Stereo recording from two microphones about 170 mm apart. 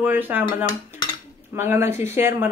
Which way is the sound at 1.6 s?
15° right (ahead or behind).